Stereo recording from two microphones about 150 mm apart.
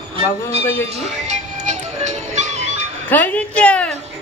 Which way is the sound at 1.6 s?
50° right (ahead or behind).